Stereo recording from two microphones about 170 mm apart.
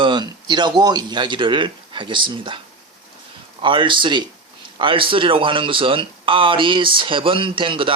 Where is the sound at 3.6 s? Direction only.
30° right (ahead or behind).